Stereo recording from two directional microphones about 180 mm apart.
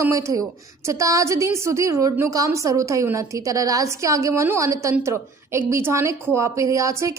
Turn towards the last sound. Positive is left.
turn(degrees=-15)  # may be behind; listen again after turning